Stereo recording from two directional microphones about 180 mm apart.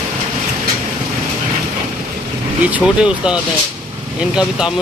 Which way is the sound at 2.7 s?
5° right (ahead or behind).